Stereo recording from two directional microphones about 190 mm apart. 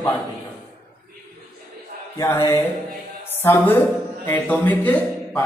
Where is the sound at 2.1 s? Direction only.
15° left (ahead or behind).